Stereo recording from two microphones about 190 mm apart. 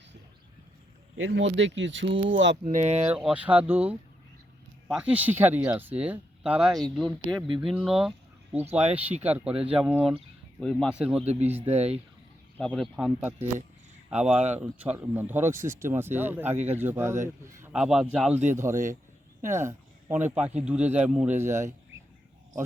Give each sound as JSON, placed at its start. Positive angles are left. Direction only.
{"t": 1.1, "sound": "speech", "side_deg": -80}
{"t": 2.6, "sound": "speech", "side_deg": -40}
{"t": 3.1, "sound": "speech", "side_deg": -5}
{"t": 9.2, "sound": "speech", "side_deg": -5}
{"t": 11.3, "sound": "speech", "side_deg": -35}
{"t": 12.5, "sound": "speech", "side_deg": 5}
{"t": 16.5, "sound": "speech", "side_deg": -35}
{"t": 16.7, "sound": "speech", "side_deg": -10}